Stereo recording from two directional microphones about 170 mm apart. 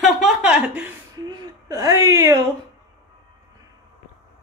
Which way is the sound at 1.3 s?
20° right (ahead or behind).